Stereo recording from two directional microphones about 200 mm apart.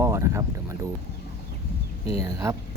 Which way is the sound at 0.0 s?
15° right (ahead or behind).